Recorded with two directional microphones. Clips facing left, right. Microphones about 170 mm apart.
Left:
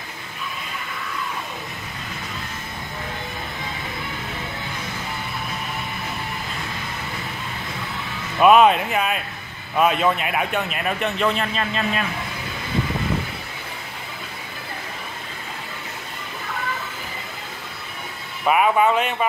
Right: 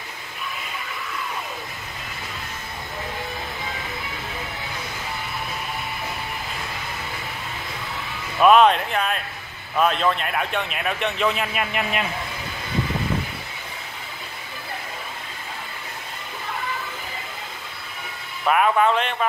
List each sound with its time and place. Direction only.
8.4 s a man's voice: 5° left (ahead or behind)
11.5 s a man's voice: 15° right (ahead or behind)
18.4 s speech: 5° left (ahead or behind)